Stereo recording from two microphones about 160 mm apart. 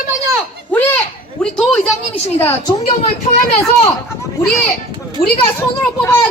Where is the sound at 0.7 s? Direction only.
10° left (ahead or behind).